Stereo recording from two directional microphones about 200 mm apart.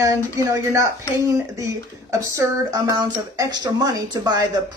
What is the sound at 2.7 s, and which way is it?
Speech, 20° right (ahead or behind).